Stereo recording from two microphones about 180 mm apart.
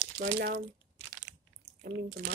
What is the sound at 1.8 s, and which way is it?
Speech, 55° right (ahead or behind).